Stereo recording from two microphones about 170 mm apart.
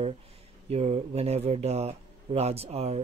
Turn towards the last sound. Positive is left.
turn(degrees=-40)  # may be behind; listen again after turning